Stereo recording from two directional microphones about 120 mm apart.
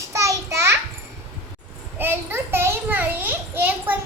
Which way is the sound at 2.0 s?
20° right (ahead or behind).